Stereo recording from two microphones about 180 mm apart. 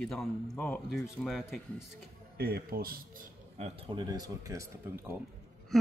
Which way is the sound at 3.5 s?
30° right (ahead or behind).